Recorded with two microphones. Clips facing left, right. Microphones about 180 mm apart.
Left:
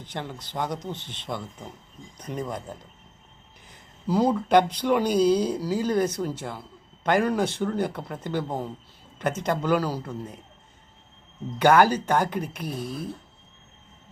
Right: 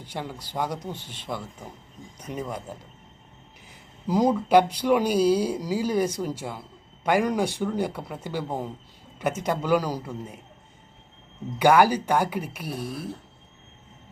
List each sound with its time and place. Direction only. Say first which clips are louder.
0.0 s speech: even; 10° right (ahead or behind)
11.6 s speech: even; 10° right (ahead or behind)